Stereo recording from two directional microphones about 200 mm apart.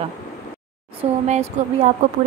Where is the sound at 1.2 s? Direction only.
35° right (ahead or behind).